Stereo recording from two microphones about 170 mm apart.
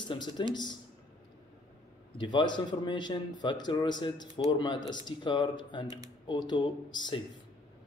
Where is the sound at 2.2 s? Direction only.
25° left (ahead or behind).